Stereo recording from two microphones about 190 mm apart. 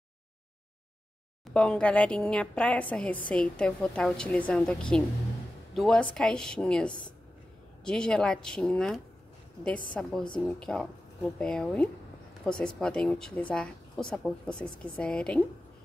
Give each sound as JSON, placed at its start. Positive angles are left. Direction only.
{"t": 1.5, "sound": "a woman's voice", "side_deg": 5}